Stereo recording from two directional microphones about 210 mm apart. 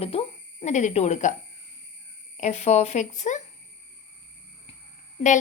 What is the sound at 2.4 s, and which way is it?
A woman's voice, 30° left (ahead or behind).